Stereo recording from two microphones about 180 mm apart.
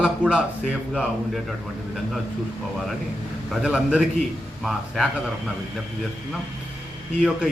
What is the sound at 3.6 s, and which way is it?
Speech, 5° right (ahead or behind).